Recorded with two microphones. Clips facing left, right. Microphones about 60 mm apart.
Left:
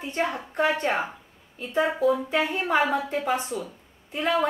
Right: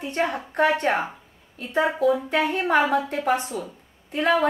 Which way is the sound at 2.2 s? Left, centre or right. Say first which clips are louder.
Right 3 dB; right.